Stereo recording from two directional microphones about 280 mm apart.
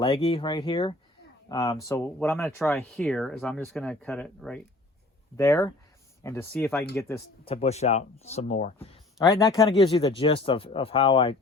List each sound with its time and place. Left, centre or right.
0.0 s speech: centre
7.5 s speech: left
9.1 s speech: centre